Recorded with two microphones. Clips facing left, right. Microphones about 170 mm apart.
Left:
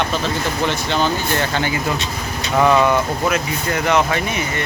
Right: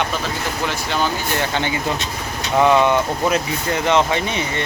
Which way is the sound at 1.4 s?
15° right (ahead or behind).